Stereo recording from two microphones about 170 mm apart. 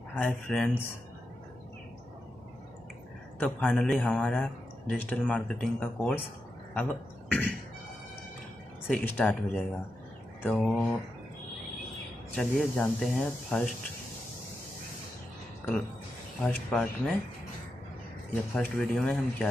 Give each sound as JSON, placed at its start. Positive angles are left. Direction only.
{"t": 0.1, "sound": "speech", "side_deg": 5}
{"t": 3.3, "sound": "speech", "side_deg": 10}
{"t": 8.8, "sound": "speech", "side_deg": 10}
{"t": 12.4, "sound": "speech", "side_deg": 5}
{"t": 16.4, "sound": "speech", "side_deg": 5}
{"t": 18.5, "sound": "speech", "side_deg": 10}